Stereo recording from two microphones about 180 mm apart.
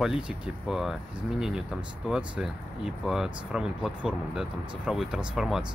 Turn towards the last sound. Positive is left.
turn(degrees=-5)  # may be behind; listen again after turning